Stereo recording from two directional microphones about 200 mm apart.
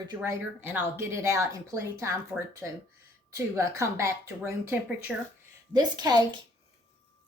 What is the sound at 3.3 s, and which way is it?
A woman's voice, 15° right (ahead or behind).